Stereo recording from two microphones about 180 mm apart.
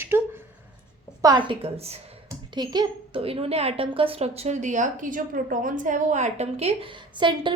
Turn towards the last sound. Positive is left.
turn(degrees=-25)  # may be behind; listen again after turning